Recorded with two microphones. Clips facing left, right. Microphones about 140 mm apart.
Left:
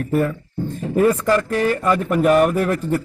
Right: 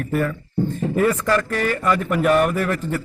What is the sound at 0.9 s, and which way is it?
Speech, 10° left (ahead or behind).